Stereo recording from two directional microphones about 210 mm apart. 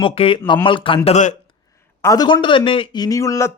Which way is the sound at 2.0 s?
15° left (ahead or behind).